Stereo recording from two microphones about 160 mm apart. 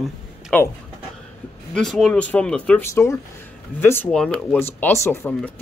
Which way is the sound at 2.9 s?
20° left (ahead or behind).